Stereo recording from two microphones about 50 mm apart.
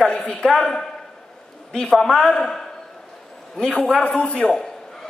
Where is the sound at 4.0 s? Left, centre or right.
Left.